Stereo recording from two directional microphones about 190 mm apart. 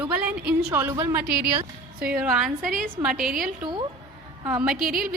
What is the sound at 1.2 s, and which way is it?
Speech, 55° right (ahead or behind).